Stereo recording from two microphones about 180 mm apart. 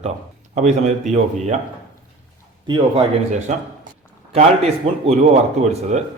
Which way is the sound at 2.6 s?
25° right (ahead or behind).